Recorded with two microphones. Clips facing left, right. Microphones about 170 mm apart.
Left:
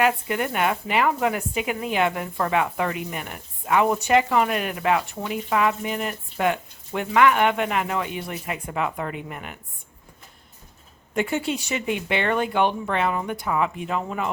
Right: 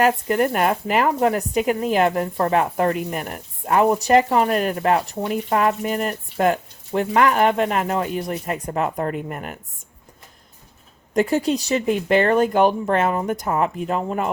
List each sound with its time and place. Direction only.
0.0 s speech: 40° right (ahead or behind)
11.1 s speech: 40° right (ahead or behind)